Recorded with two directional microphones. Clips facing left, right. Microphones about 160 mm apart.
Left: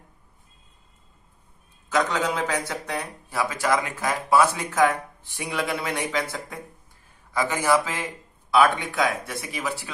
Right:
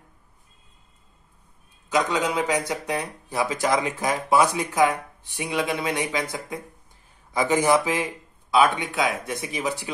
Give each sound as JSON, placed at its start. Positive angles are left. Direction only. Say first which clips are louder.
{"t": 1.9, "sound": "speech", "louder": "right 1 dB", "side_deg": -15}